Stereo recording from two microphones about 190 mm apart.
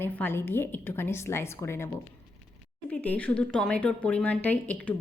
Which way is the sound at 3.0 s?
10° left (ahead or behind).